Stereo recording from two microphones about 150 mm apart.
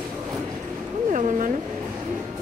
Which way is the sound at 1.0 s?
55° right (ahead or behind).